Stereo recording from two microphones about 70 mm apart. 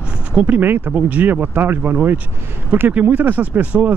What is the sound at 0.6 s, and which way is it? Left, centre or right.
Speech, right.